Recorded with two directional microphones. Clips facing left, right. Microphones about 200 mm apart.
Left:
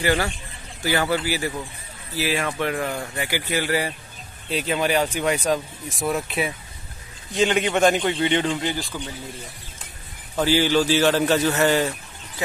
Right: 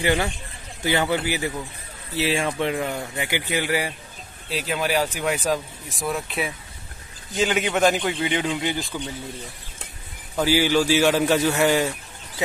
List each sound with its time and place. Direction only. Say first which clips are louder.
0.0 s speech: even; 20° right (ahead or behind)
2.8 s a man's voice: even; 5° right (ahead or behind)
3.2 s a man's voice: even; 20° right (ahead or behind)
4.5 s speech: left 2 dB; centre (ahead or behind)
10.3 s a man's voice: even; 10° right (ahead or behind)